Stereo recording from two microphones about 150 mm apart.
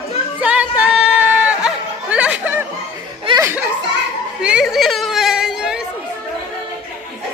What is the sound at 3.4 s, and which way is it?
Children playing, 15° right (ahead or behind).